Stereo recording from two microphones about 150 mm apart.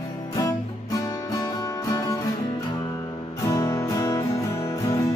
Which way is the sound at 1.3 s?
25° left (ahead or behind).